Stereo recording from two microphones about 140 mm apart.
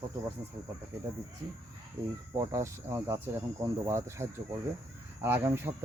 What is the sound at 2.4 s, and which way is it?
Speech, 20° right (ahead or behind).